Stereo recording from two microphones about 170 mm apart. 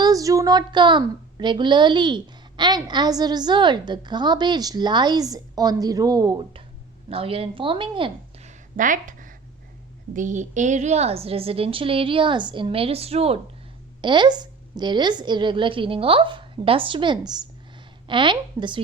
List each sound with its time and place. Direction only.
0.0 s a woman's voice: 20° right (ahead or behind)